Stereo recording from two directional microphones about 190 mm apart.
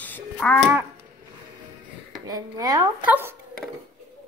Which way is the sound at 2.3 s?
20° right (ahead or behind).